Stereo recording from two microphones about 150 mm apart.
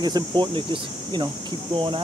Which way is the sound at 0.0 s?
30° right (ahead or behind).